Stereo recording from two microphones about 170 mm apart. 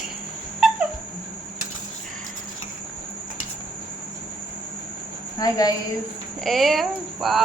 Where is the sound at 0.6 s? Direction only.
Centre (ahead or behind).